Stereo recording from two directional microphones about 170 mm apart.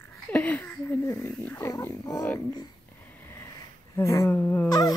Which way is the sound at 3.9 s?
15° left (ahead or behind).